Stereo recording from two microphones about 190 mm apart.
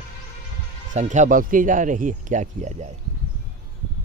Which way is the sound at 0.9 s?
40° right (ahead or behind).